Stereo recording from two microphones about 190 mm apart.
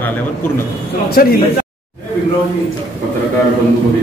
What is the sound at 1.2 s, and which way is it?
Speech, 50° left (ahead or behind).